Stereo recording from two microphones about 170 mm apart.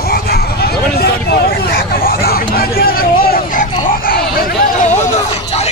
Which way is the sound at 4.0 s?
60° left (ahead or behind).